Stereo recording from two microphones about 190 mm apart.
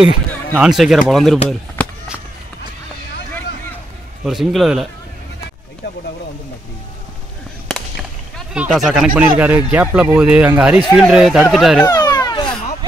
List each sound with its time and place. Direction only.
0.6 s speech: 5° right (ahead or behind)
1.8 s walk: 10° left (ahead or behind)
4.2 s speech: centre (ahead or behind)
8.5 s a man's voice: 5° right (ahead or behind)
11.8 s a sound: 20° left (ahead or behind)